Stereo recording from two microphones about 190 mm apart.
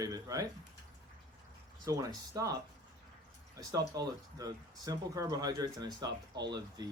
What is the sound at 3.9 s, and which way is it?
Speech, 20° right (ahead or behind).